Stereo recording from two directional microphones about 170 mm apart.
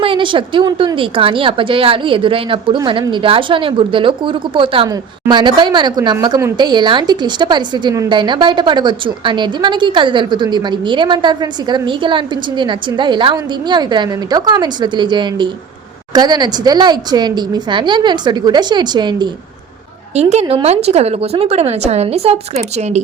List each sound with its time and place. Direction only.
0.0 s a woman's voice: 30° right (ahead or behind)
20.1 s a woman's voice: 40° right (ahead or behind)